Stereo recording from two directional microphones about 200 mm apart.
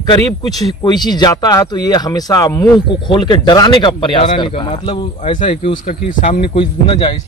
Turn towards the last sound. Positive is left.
turn(degrees=25)  # may be behind; listen again after turning